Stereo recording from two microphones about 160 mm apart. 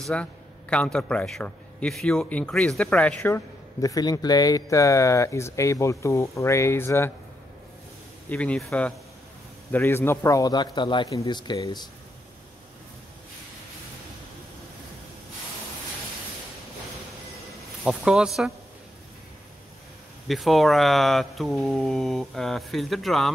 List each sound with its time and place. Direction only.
0.0 s a man's voice: 5° left (ahead or behind)
8.3 s speech: 5° left (ahead or behind)
9.7 s speech: 15° left (ahead or behind)
17.8 s speech: 5° right (ahead or behind)
20.2 s speech: centre (ahead or behind)